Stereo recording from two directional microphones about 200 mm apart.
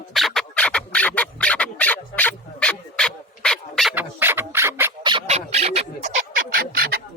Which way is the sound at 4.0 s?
10° right (ahead or behind).